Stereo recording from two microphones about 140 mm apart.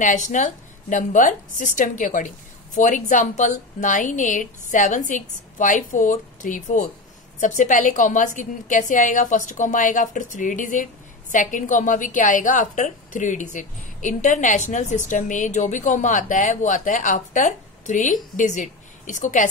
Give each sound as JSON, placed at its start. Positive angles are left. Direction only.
{"t": 0.0, "sound": "a woman's voice", "side_deg": 60}